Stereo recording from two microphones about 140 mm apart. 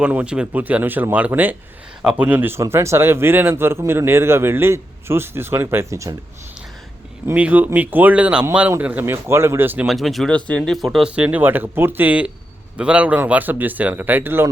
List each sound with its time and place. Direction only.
0.0 s speech: 10° right (ahead or behind)
7.3 s speech: 10° right (ahead or behind)
9.8 s speech: centre (ahead or behind); by 14.5 s 15° right (ahead or behind)